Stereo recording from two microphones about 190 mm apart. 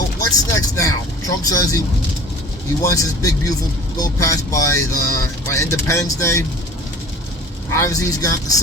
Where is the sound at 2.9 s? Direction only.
15° left (ahead or behind).